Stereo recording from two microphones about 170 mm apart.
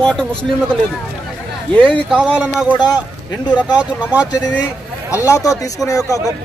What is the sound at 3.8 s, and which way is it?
Speech, 10° right (ahead or behind).